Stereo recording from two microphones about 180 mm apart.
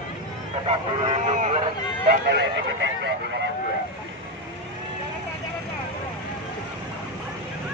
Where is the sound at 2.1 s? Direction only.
60° right (ahead or behind).